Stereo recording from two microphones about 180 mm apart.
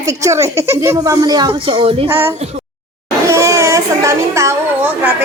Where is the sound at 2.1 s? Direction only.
10° right (ahead or behind).